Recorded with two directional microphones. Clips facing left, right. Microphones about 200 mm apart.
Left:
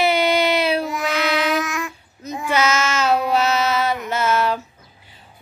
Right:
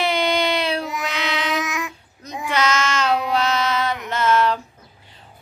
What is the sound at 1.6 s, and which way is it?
Child singing, 20° right (ahead or behind).